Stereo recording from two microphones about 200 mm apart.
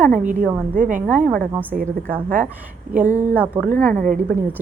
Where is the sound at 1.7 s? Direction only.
45° right (ahead or behind).